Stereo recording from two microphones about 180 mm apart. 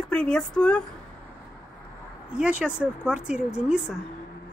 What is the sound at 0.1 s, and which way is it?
Speech, 5° left (ahead or behind).